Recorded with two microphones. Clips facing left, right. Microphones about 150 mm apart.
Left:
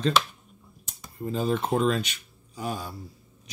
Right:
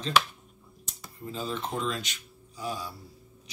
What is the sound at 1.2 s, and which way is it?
Speech, 55° left (ahead or behind).